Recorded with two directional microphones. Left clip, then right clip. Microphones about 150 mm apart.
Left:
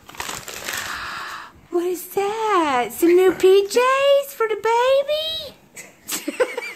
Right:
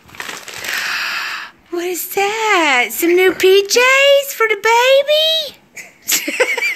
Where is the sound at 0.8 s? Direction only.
Centre (ahead or behind).